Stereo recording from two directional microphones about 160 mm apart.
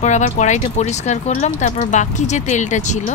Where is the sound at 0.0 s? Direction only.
45° left (ahead or behind).